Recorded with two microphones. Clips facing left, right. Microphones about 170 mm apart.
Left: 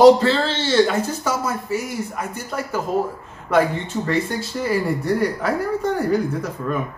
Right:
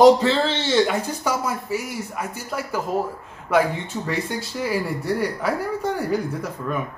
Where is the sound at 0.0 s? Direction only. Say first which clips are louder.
Left 2 dB; 15° right (ahead or behind).